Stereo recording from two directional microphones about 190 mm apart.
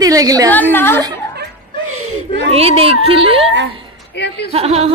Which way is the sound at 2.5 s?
30° right (ahead or behind).